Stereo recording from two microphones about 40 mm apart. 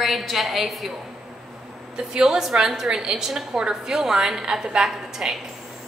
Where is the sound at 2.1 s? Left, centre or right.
Centre.